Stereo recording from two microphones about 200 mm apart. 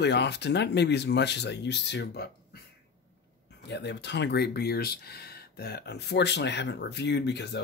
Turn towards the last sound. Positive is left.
turn(degrees=55)  # may be behind; listen again after turning